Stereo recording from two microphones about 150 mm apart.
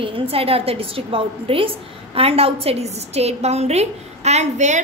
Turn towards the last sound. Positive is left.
turn(degrees=-50)  # may be behind; listen again after turning